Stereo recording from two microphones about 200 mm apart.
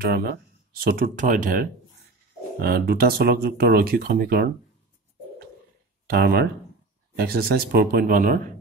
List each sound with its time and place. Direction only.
0.0 s speech: 50° right (ahead or behind)
6.0 s speech: 50° right (ahead or behind)